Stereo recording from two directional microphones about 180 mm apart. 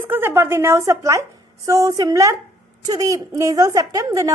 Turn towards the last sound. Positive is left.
turn(degrees=-20)  # may be behind; listen again after turning